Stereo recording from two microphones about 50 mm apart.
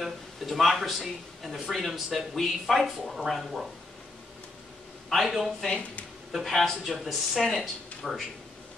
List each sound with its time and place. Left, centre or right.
0.0 s speech: centre
5.1 s speech: centre